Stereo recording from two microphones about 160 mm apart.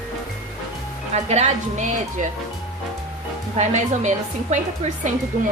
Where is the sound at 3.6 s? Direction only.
45° right (ahead or behind).